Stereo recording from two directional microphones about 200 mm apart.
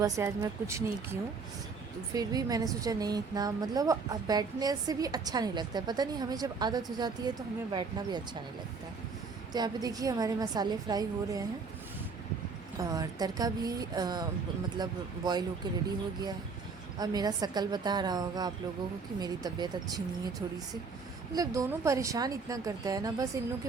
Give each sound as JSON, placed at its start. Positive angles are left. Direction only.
{"t": 0.0, "sound": "speech", "side_deg": -15}
{"t": 9.5, "sound": "speech", "side_deg": -20}
{"t": 12.8, "sound": "speech", "side_deg": -15}
{"t": 17.0, "sound": "speech", "side_deg": -20}
{"t": 21.3, "sound": "speech", "side_deg": -15}